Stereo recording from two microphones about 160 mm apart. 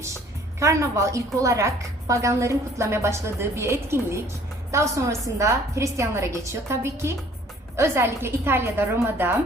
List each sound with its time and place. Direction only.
0.6 s a woman's voice: 20° right (ahead or behind)